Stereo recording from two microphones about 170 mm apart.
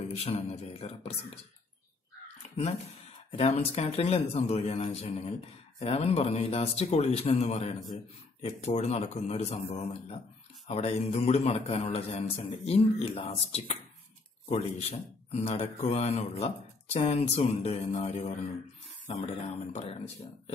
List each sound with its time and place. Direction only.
0.2 s a man's voice: 40° left (ahead or behind)
3.3 s a man's voice: 35° left (ahead or behind)
19.7 s a man's voice: 40° left (ahead or behind)